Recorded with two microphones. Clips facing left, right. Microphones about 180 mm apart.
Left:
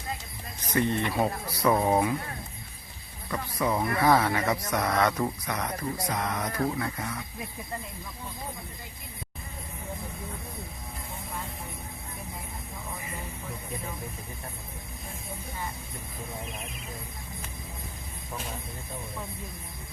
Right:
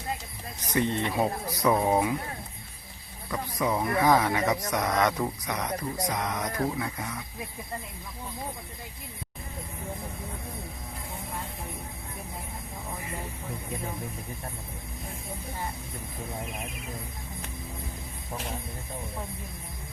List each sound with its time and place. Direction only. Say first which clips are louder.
0.7 s speech: even; 20° right (ahead or behind)
1.6 s speech: even; 5° right (ahead or behind)
3.2 s speech: even; 5° right (ahead or behind)
3.8 s speech: even; 15° right (ahead or behind)